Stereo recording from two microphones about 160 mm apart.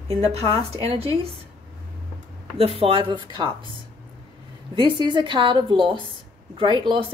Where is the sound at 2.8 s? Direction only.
30° right (ahead or behind).